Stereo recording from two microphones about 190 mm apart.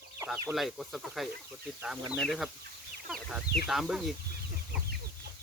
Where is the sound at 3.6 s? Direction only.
Centre (ahead or behind).